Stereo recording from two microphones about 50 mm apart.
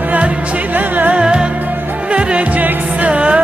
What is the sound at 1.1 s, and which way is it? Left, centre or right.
Music, centre.